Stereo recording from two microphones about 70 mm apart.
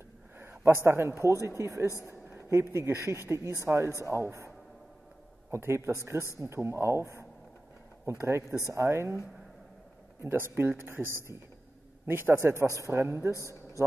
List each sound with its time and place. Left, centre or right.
0.4 s a man's voice: right
2.0 s a sound: right
2.7 s speech: right
5.5 s speech: right
10.2 s speech: right